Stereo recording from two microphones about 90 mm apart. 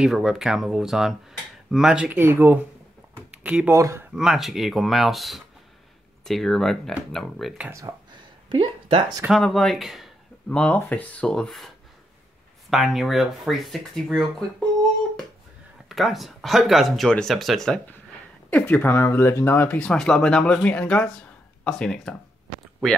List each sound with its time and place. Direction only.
0.0 s speech: 5° right (ahead or behind)
2.1 s speech: 25° right (ahead or behind)
3.2 s a sound: 15° right (ahead or behind)
3.7 s speech: 35° right (ahead or behind)
4.1 s speech: 5° right (ahead or behind)
7.9 s speech: 45° right (ahead or behind)
8.5 s speech: 60° right (ahead or behind)
9.3 s speech: centre (ahead or behind)
10.5 s speech: 15° left (ahead or behind)
15.9 s speech: centre (ahead or behind)
18.5 s speech: 20° left (ahead or behind)
19.8 s speech: 5° left (ahead or behind)